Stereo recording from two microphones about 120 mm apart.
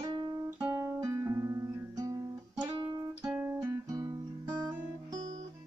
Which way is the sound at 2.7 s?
40° right (ahead or behind).